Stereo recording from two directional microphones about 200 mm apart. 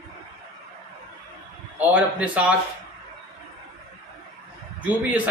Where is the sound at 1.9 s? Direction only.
5° right (ahead or behind).